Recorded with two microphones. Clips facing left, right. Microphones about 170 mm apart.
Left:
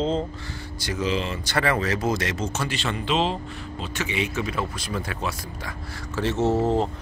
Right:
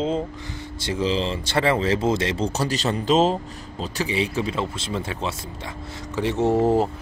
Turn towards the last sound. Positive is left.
turn(degrees=-10)  # may be behind; listen again after turning